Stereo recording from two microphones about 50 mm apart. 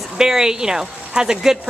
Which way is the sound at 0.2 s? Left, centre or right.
Centre.